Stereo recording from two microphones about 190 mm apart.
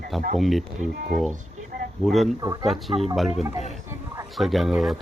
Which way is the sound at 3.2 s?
Centre (ahead or behind).